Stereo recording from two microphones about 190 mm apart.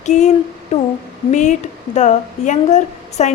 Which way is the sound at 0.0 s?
40° left (ahead or behind).